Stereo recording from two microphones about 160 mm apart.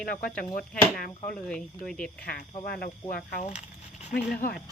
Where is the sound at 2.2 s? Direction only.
70° left (ahead or behind).